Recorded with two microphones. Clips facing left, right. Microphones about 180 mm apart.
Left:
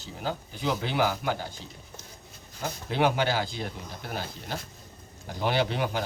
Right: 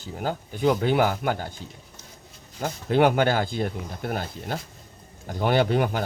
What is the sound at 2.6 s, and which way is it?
Speech, 55° right (ahead or behind).